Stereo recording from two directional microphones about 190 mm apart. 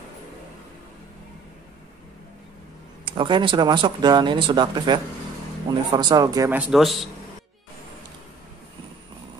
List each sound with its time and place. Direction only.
3.1 s speech: 25° right (ahead or behind)
6.5 s a man's voice: 5° right (ahead or behind)